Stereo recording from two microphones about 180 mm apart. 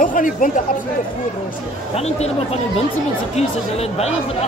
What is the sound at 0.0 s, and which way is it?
Chatter, 45° left (ahead or behind).